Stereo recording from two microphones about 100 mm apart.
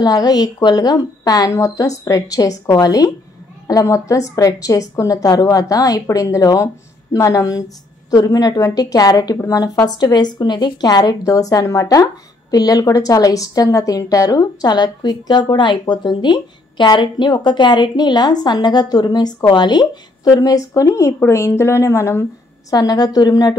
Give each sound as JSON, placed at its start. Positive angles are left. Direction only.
{"t": 0.0, "sound": "a woman's voice", "side_deg": 40}
{"t": 22.7, "sound": "a woman's voice", "side_deg": 40}